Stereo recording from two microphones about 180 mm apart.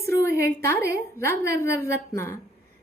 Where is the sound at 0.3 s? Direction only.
55° right (ahead or behind).